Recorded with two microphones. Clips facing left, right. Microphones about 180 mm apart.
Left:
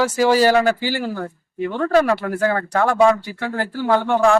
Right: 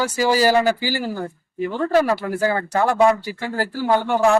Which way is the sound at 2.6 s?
20° right (ahead or behind).